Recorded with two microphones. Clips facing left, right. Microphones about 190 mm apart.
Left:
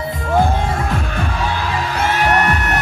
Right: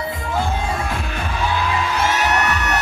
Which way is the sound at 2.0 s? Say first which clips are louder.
Left 5 dB; 55° left (ahead or behind).